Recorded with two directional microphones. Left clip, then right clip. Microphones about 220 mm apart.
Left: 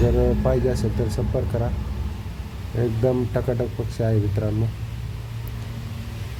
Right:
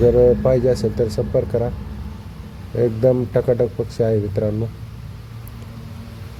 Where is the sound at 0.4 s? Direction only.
15° right (ahead or behind).